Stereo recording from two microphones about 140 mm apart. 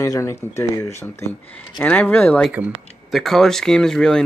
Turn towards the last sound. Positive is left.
turn(degrees=5)  # may be behind; listen again after turning